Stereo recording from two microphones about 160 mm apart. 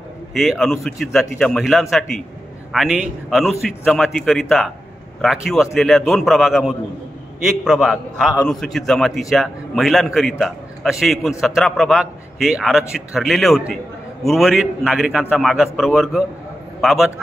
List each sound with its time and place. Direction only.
0.3 s a man's voice: centre (ahead or behind)